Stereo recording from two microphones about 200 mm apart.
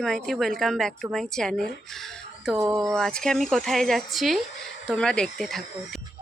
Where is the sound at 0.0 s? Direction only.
Centre (ahead or behind).